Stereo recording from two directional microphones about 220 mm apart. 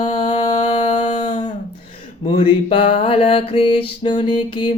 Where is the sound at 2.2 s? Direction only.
25° left (ahead or behind).